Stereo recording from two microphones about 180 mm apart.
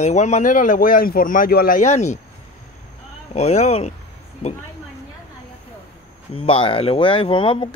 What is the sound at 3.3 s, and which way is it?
Speech, 40° left (ahead or behind).